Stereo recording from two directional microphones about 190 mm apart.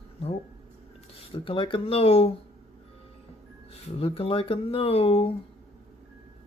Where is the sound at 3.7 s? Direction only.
30° left (ahead or behind).